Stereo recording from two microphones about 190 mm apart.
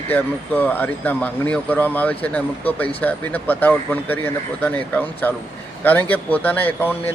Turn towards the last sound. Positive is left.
turn(degrees=10)  # may be behind; listen again after turning